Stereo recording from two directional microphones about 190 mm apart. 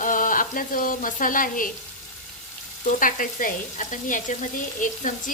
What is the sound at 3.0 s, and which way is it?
Frying, 45° left (ahead or behind).